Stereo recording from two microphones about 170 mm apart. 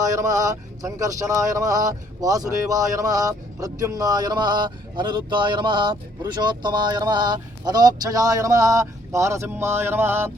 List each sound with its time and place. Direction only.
0.0 s speech: 20° right (ahead or behind)